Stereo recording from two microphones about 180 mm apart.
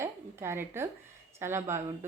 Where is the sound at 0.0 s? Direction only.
15° right (ahead or behind).